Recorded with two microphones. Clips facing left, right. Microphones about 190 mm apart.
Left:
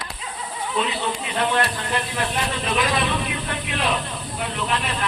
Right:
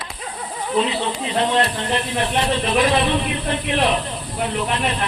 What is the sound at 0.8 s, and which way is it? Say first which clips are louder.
Speech: right 4 dB; 30° right (ahead or behind).